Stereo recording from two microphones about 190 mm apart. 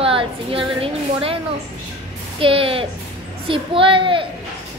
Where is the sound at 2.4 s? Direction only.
30° right (ahead or behind).